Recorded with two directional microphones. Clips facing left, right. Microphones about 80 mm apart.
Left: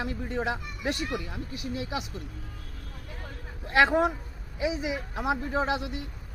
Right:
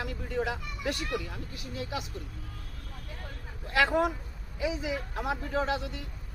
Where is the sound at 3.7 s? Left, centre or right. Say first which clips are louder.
Left 3 dB; left.